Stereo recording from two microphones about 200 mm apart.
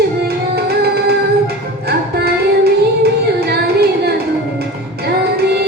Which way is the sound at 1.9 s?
55° right (ahead or behind).